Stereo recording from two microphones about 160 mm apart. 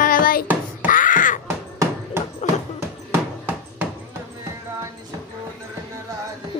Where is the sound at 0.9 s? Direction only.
55° left (ahead or behind).